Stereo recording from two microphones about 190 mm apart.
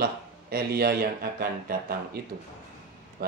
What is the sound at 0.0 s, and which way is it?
Speech, 55° right (ahead or behind).